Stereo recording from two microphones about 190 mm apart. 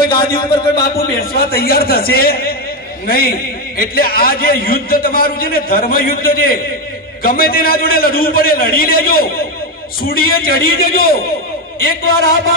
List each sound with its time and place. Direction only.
0.7 s a man's voice: 55° left (ahead or behind)